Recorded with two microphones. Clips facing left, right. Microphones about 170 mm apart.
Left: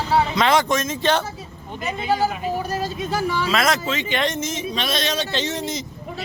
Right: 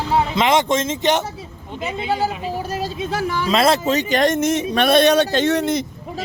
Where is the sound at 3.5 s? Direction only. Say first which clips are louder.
Right 8 dB; 30° right (ahead or behind); by 5.8 s 60° right (ahead or behind).